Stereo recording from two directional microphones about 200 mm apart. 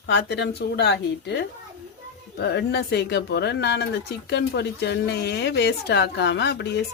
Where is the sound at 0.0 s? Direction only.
55° left (ahead or behind).